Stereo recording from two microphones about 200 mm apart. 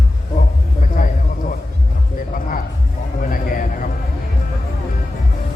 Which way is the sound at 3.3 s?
45° left (ahead or behind).